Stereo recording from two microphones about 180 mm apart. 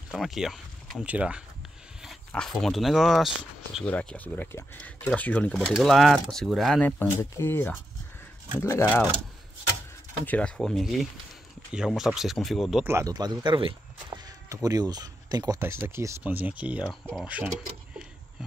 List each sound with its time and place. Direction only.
0.1 s speech: centre (ahead or behind); by 9.0 s 15° left (ahead or behind)
10.2 s speech: 5° left (ahead or behind)
12.8 s speech: 15° right (ahead or behind)